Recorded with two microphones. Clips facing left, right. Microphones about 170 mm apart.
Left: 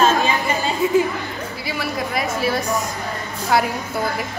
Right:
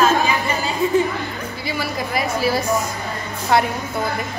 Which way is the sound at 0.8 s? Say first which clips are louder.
Even; 5° left (ahead or behind).